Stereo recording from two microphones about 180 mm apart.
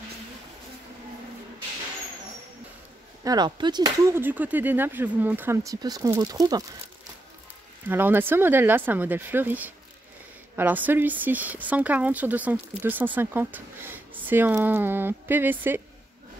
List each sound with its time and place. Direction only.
3.3 s speech: 25° right (ahead or behind)
7.9 s speech: 10° right (ahead or behind)